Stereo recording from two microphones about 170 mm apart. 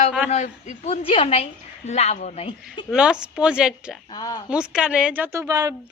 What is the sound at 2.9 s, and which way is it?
A woman's voice, 5° right (ahead or behind).